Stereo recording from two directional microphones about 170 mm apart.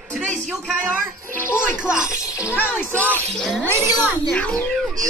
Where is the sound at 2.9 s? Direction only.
10° left (ahead or behind).